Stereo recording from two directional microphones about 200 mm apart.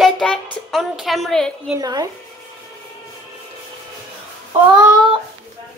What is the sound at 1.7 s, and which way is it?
Speech, 20° right (ahead or behind).